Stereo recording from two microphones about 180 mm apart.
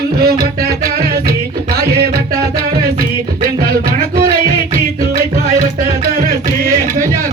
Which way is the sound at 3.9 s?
55° right (ahead or behind).